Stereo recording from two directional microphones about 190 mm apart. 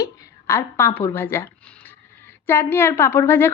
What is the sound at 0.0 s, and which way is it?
A woman's voice, 15° left (ahead or behind).